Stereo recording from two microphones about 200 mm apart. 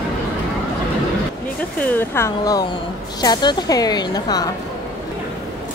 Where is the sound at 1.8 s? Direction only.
10° left (ahead or behind).